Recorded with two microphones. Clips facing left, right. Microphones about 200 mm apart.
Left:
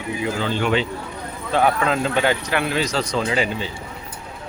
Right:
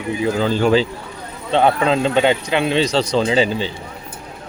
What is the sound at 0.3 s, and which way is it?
A man's voice, 35° right (ahead or behind).